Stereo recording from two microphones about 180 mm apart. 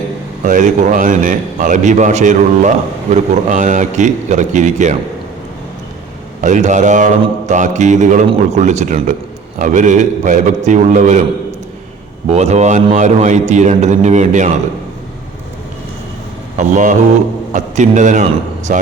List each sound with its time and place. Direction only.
0.4 s a man's voice: 45° right (ahead or behind)
6.4 s a man's voice: 40° right (ahead or behind)
12.3 s a man's voice: 40° right (ahead or behind)
16.6 s a man's voice: 45° right (ahead or behind)